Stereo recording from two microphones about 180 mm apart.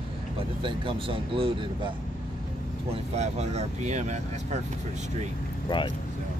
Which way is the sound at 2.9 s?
35° right (ahead or behind).